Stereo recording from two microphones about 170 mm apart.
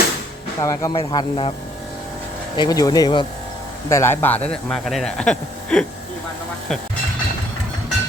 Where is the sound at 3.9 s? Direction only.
15° left (ahead or behind).